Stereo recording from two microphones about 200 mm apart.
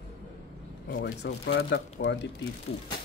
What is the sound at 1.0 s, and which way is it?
Speech, 60° left (ahead or behind).